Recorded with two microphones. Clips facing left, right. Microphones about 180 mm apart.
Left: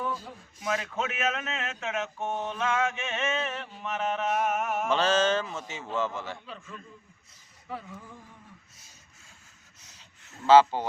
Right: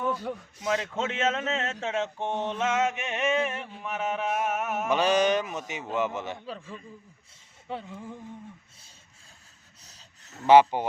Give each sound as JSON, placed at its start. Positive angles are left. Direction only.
{"t": 0.1, "sound": "speech", "side_deg": -65}
{"t": 0.6, "sound": "speech", "side_deg": -25}
{"t": 4.9, "sound": "a man's voice", "side_deg": -15}
{"t": 6.4, "sound": "a man's voice", "side_deg": -35}
{"t": 9.8, "sound": "rub", "side_deg": -35}
{"t": 10.4, "sound": "a man's voice", "side_deg": -15}